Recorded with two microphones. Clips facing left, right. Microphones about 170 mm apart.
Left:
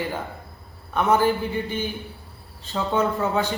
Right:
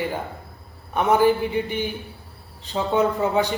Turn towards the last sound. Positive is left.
turn(degrees=-15)  # may be behind; listen again after turning